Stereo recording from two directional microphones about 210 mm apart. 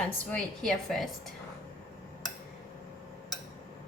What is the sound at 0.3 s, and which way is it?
Speech, 5° left (ahead or behind).